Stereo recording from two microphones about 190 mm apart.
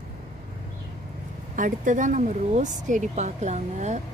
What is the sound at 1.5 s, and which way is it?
Speech, 45° right (ahead or behind).